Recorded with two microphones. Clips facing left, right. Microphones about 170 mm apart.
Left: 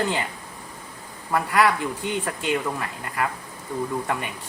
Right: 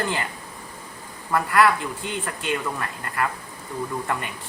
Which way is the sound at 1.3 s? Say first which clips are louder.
Right 1 dB; 10° left (ahead or behind).